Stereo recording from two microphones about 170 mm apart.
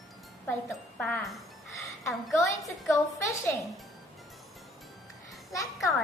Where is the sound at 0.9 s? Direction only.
5° left (ahead or behind).